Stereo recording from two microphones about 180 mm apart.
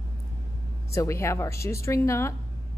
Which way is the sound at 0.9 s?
15° left (ahead or behind).